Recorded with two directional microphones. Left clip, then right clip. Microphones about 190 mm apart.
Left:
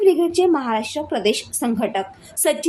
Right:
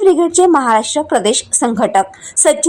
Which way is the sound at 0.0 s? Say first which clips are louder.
Right 6 dB; 20° right (ahead or behind).